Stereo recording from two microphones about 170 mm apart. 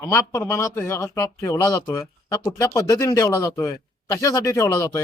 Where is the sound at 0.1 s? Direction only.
15° left (ahead or behind).